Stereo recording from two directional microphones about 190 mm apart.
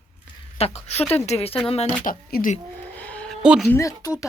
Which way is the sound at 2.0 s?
50° left (ahead or behind).